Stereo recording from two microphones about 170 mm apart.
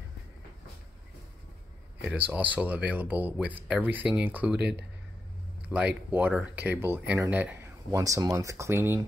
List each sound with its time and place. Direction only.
2.0 s speech: 10° right (ahead or behind)
4.6 s speech: 80° right
5.7 s speech: 10° right (ahead or behind)